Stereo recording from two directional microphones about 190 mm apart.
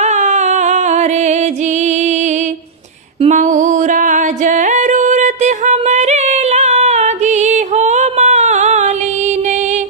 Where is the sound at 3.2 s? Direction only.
40° right (ahead or behind).